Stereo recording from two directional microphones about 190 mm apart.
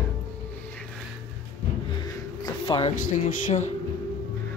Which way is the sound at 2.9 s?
45° left (ahead or behind).